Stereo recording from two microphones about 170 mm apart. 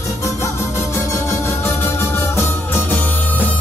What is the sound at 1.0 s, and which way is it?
Music, 15° left (ahead or behind).